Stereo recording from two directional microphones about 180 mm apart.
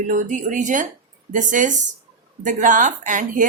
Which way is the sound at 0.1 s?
45° right (ahead or behind).